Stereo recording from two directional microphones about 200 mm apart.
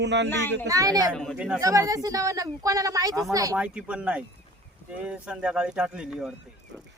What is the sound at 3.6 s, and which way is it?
Speech, 5° right (ahead or behind).